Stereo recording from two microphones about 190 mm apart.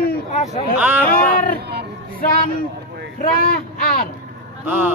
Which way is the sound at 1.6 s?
60° right (ahead or behind).